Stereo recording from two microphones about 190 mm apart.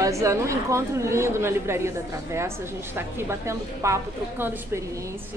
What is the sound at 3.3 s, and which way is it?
Speech, 15° right (ahead or behind).